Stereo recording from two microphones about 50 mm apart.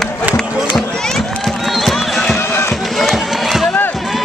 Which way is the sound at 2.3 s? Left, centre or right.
Left.